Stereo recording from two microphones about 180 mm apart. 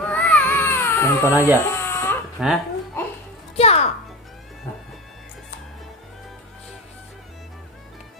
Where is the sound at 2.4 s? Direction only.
Centre (ahead or behind).